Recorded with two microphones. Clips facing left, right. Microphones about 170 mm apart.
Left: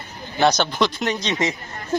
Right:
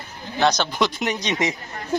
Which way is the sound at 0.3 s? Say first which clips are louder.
Left 2 dB; centre (ahead or behind).